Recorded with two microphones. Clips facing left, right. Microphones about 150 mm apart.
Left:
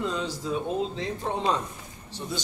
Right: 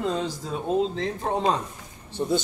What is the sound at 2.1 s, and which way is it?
Speech, 55° right (ahead or behind).